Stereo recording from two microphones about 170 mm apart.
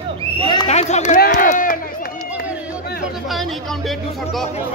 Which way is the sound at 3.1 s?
Centre (ahead or behind).